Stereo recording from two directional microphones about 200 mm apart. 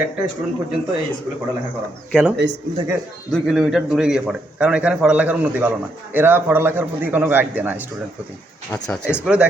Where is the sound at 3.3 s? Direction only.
Centre (ahead or behind).